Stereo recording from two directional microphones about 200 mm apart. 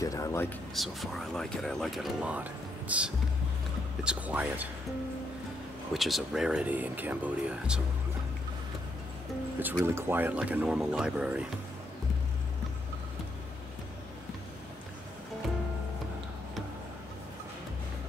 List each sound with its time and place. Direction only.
0.0 s speech: 15° left (ahead or behind)
0.7 s speech: centre (ahead or behind)
5.9 s speech: centre (ahead or behind)
9.6 s speech: 10° right (ahead or behind)